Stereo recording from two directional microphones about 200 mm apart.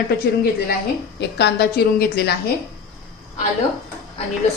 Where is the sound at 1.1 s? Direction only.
55° left (ahead or behind).